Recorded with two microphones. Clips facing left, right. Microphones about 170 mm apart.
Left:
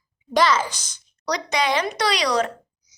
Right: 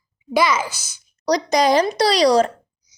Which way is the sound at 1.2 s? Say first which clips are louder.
Right 6 dB; 35° right (ahead or behind).